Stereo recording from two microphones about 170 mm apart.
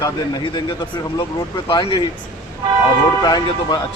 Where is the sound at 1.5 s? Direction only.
30° left (ahead or behind).